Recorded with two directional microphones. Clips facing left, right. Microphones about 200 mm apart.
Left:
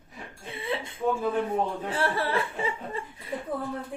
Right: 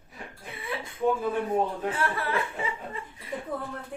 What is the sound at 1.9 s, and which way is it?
Speech, 30° left (ahead or behind).